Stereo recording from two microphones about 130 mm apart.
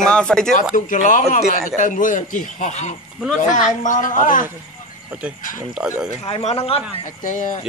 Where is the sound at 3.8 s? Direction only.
85° left.